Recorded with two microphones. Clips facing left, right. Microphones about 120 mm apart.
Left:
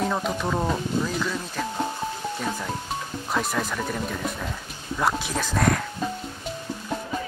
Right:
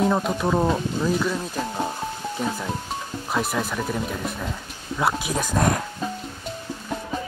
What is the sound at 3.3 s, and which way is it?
Speech, 5° right (ahead or behind).